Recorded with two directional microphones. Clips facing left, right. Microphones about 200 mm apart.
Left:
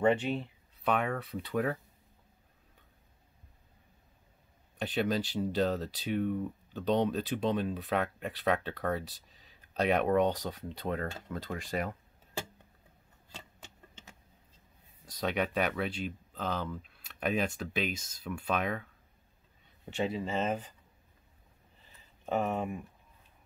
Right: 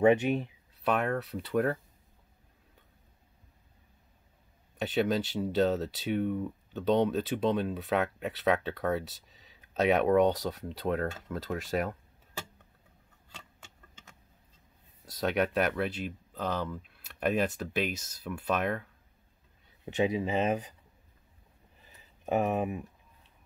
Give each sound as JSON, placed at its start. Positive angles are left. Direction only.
{"t": 0.0, "sound": "speech", "side_deg": -15}
{"t": 4.7, "sound": "speech", "side_deg": 0}
{"t": 15.2, "sound": "speech", "side_deg": -5}
{"t": 19.9, "sound": "speech", "side_deg": -15}
{"t": 22.2, "sound": "speech", "side_deg": -15}